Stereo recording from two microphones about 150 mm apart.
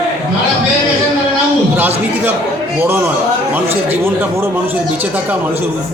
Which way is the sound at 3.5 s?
15° right (ahead or behind).